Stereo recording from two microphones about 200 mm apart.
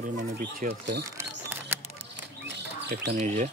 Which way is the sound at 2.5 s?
60° right (ahead or behind).